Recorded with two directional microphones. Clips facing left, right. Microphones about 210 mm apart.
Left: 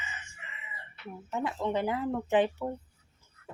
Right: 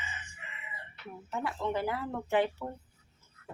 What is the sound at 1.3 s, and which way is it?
Speech, 20° left (ahead or behind).